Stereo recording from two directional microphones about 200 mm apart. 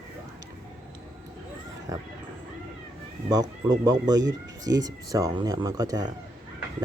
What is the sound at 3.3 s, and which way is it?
Speech, 20° right (ahead or behind).